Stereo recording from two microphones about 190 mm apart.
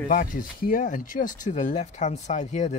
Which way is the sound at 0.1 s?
45° left (ahead or behind).